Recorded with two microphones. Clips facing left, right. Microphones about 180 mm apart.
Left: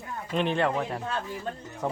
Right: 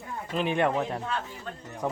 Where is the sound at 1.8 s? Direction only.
15° left (ahead or behind).